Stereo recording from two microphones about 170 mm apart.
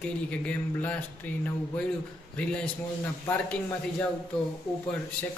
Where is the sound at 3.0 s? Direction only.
10° left (ahead or behind).